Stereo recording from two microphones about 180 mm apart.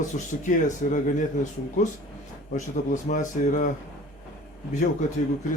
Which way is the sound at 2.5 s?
40° left (ahead or behind).